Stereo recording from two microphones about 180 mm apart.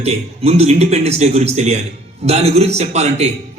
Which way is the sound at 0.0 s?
35° right (ahead or behind).